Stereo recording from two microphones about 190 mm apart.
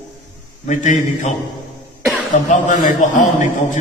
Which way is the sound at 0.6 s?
40° left (ahead or behind).